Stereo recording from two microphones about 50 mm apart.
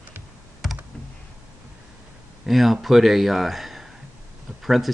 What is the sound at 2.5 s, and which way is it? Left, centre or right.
Speech, centre.